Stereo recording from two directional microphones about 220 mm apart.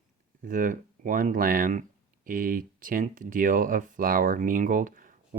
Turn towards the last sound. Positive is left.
turn(degrees=-40)  # may be behind; listen again after turning